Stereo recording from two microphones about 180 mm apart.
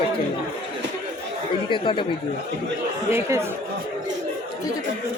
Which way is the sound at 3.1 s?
15° right (ahead or behind).